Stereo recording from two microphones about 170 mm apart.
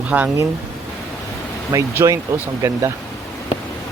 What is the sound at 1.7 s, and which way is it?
Speech, 15° right (ahead or behind).